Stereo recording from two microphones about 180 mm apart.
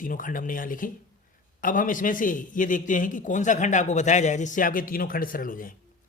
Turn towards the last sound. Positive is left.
turn(degrees=50)  # may be behind; listen again after turning